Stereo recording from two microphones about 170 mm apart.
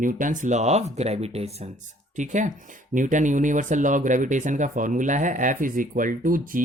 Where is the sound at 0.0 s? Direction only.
50° right (ahead or behind).